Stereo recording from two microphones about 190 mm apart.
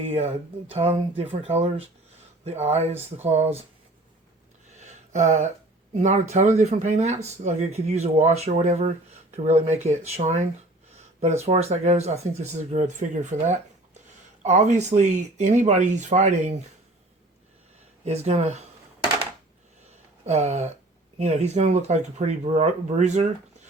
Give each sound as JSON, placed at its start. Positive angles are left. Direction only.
{"t": 0.0, "sound": "speech", "side_deg": -35}
{"t": 4.8, "sound": "a sound", "side_deg": -40}
{"t": 6.0, "sound": "speech", "side_deg": -40}
{"t": 11.4, "sound": "speech", "side_deg": -35}
{"t": 18.0, "sound": "speech", "side_deg": -35}
{"t": 20.2, "sound": "speech", "side_deg": -35}